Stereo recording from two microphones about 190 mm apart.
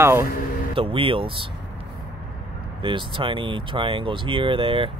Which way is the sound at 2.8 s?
25° right (ahead or behind).